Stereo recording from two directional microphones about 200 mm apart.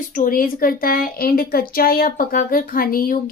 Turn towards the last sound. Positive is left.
turn(degrees=45)  # may be behind; listen again after turning